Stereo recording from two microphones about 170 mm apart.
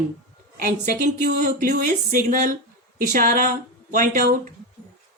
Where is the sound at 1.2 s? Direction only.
55° right (ahead or behind).